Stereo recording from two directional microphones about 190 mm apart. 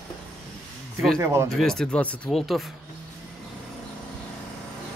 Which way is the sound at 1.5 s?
5° left (ahead or behind).